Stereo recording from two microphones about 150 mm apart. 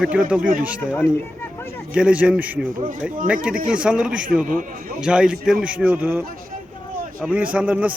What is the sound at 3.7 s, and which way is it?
Speech, 5° right (ahead or behind).